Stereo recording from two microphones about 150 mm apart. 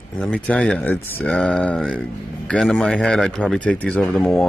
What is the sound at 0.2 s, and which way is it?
A man's voice, 5° left (ahead or behind).